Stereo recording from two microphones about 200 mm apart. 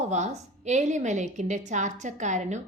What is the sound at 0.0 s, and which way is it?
A woman's voice, 35° right (ahead or behind).